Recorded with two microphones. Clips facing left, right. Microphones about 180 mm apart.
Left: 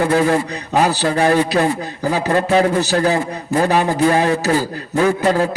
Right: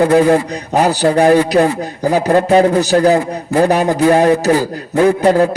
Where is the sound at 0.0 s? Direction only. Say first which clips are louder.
Right 5 dB; 40° right (ahead or behind).